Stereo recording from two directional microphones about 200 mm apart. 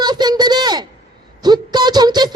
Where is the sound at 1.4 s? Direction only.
20° right (ahead or behind).